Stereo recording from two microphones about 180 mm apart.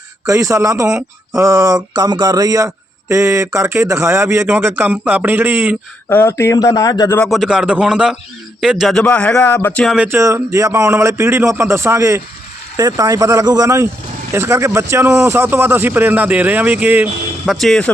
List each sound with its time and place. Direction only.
0.3 s a man's voice: 15° right (ahead or behind)
6.1 s speech: 15° left (ahead or behind)
7.2 s a man's voice: centre (ahead or behind)
10.0 s a man's voice: 15° right (ahead or behind); by 17.9 s 5° left (ahead or behind)